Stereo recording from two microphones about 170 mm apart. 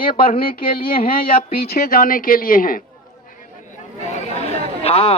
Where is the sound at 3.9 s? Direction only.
45° left (ahead or behind).